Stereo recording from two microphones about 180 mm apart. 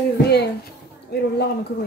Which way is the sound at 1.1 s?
60° left (ahead or behind).